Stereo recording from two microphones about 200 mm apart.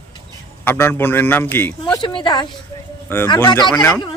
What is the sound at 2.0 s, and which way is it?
Speech, 25° left (ahead or behind).